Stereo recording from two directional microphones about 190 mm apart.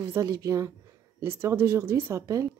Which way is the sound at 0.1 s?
15° right (ahead or behind).